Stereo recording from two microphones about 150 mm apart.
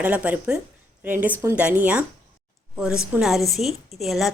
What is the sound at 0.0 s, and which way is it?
A woman's voice, 10° right (ahead or behind).